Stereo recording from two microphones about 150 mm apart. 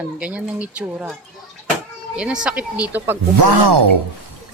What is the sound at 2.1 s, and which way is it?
Speech, 5° right (ahead or behind).